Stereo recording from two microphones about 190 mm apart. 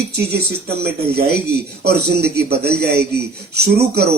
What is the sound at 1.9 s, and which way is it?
A man's voice, 55° right (ahead or behind).